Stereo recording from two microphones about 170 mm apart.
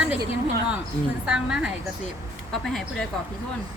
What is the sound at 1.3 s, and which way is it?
Speech, 5° right (ahead or behind).